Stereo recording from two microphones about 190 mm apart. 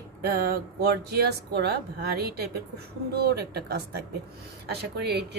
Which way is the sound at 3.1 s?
60° right (ahead or behind).